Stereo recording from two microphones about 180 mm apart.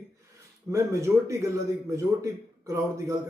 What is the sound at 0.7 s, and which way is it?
Speech, 15° right (ahead or behind).